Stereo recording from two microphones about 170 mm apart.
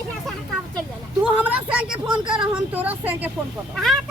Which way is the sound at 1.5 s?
10° right (ahead or behind).